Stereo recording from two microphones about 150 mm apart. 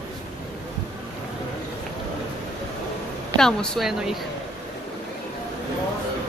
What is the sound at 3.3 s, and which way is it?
Speech, 5° left (ahead or behind).